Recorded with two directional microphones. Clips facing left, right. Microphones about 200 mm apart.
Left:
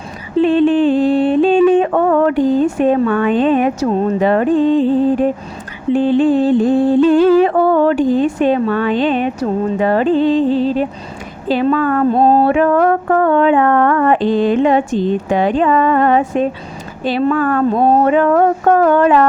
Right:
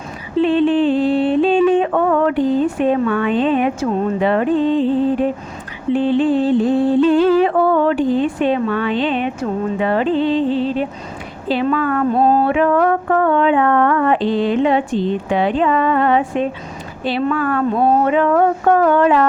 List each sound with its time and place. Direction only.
0.3 s yodeling: 45° left (ahead or behind)
5.9 s music: 45° left (ahead or behind)